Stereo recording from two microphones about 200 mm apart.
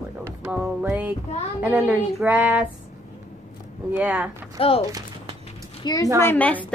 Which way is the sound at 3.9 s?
10° right (ahead or behind).